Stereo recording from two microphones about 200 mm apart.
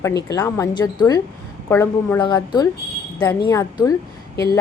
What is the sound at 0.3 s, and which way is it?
A woman's voice, 15° left (ahead or behind).